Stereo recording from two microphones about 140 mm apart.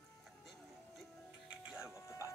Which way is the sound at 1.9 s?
20° left (ahead or behind).